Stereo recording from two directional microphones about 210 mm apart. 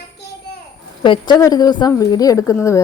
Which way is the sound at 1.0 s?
20° left (ahead or behind).